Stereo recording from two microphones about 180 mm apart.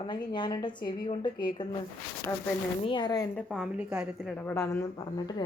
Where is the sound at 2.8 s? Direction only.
25° left (ahead or behind).